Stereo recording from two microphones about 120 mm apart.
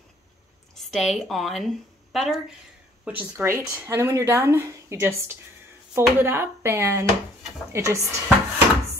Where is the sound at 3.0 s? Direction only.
15° right (ahead or behind).